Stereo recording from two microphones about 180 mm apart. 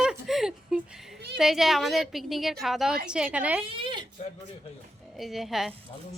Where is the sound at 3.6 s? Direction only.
30° right (ahead or behind).